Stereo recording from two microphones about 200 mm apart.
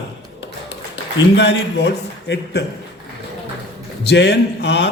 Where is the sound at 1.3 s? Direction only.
60° left (ahead or behind).